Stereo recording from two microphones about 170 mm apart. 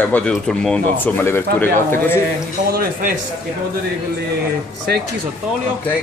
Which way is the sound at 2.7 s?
60° right (ahead or behind).